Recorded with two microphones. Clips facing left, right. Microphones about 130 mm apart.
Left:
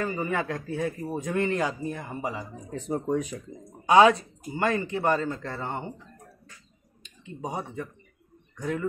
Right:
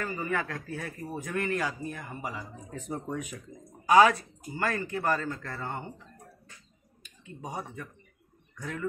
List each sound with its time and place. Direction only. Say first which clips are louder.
0.0 s speech: left 4 dB; 20° left (ahead or behind)
3.9 s speech: left 3 dB; 25° left (ahead or behind)
7.0 s speech: left 6 dB; 25° left (ahead or behind)